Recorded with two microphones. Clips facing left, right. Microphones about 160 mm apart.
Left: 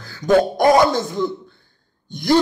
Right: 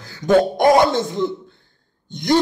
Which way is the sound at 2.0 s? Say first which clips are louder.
Left 1 dB; 20° right (ahead or behind).